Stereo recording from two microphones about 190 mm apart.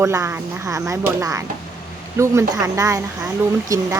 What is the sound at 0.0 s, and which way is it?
Speech, 15° right (ahead or behind).